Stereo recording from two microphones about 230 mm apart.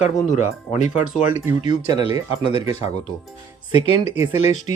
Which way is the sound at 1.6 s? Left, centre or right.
Centre.